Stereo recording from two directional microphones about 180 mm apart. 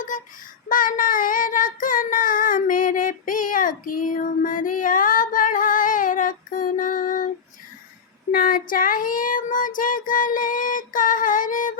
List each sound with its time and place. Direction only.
0.7 s child singing: 50° left (ahead or behind)
8.3 s child singing: 50° left (ahead or behind)